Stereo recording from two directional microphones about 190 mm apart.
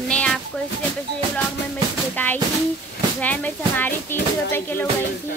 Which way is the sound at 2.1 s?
10° left (ahead or behind).